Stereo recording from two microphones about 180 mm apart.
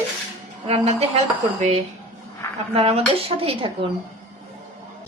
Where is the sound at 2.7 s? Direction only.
30° right (ahead or behind).